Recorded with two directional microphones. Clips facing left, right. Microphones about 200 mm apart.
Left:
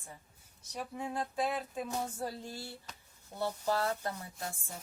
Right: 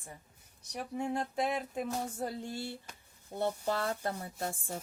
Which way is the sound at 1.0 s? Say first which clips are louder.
Right 2 dB; 20° right (ahead or behind).